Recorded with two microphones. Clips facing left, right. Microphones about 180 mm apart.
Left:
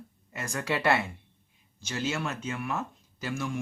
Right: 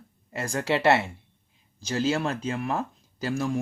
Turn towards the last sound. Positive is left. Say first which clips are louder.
# right 6 dB
turn(degrees=-35)  # may be behind; listen again after turning